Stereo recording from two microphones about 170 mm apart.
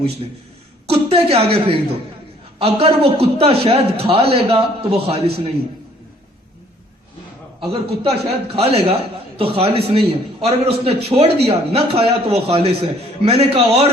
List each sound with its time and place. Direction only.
0.9 s a man's voice: 35° right (ahead or behind)
7.7 s a man's voice: 35° right (ahead or behind)